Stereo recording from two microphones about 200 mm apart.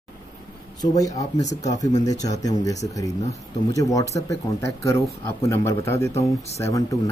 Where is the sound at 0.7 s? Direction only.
20° left (ahead or behind).